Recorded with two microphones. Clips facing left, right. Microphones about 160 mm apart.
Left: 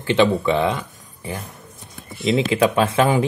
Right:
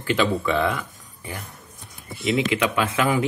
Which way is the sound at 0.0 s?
25° left (ahead or behind).